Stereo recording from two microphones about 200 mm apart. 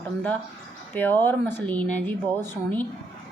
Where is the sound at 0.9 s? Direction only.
10° left (ahead or behind).